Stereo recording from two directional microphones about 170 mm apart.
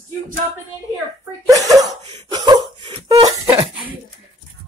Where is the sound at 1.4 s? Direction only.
20° right (ahead or behind).